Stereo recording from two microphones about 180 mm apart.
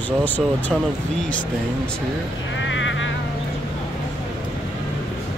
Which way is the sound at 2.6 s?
90° left.